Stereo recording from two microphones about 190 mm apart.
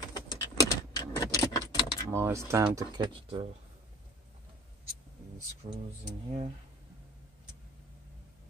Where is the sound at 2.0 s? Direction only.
15° right (ahead or behind).